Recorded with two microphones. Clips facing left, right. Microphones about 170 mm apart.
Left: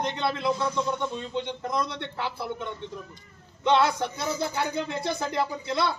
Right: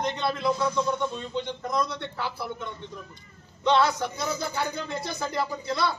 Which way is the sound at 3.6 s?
25° left (ahead or behind).